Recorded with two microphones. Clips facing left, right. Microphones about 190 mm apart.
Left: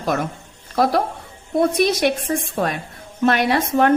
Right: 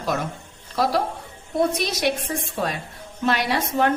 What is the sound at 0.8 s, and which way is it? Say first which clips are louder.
A woman's voice: left 4 dB; 50° left (ahead or behind).